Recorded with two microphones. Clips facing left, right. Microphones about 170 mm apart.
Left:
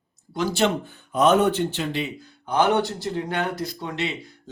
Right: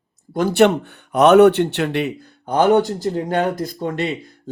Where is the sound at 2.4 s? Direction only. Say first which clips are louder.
Right 6 dB; 45° right (ahead or behind).